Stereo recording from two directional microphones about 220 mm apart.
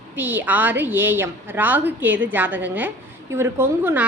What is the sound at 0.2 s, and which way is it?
Speech, 10° right (ahead or behind).